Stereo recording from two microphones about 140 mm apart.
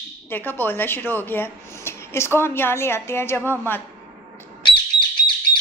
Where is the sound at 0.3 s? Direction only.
15° left (ahead or behind).